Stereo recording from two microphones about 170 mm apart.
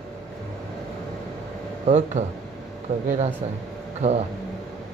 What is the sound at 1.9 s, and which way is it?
Speech, 40° right (ahead or behind).